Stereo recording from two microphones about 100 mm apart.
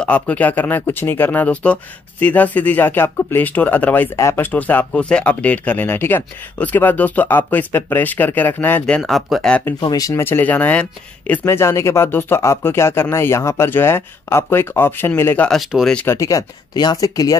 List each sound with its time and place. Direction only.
0.0 s speech: 15° left (ahead or behind)
4.5 s speech: 15° left (ahead or behind)
9.8 s speech: 40° left (ahead or behind)
10.2 s speech: 20° left (ahead or behind)
11.4 s speech: 25° left (ahead or behind)
15.4 s speech: 5° left (ahead or behind)
16.1 s speech: 35° left (ahead or behind)